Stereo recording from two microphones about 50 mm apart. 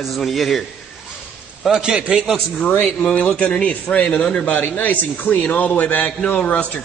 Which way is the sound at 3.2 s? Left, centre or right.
Centre.